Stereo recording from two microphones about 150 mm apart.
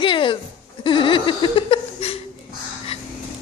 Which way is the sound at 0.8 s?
35° left (ahead or behind).